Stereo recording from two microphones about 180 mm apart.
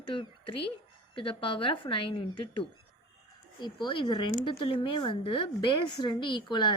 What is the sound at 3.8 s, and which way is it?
A woman's voice, 25° left (ahead or behind).